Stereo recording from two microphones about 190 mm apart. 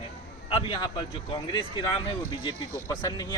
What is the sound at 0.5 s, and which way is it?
A man's voice, 25° left (ahead or behind).